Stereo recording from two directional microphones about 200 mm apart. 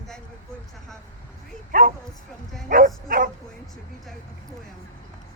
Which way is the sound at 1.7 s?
40° right (ahead or behind).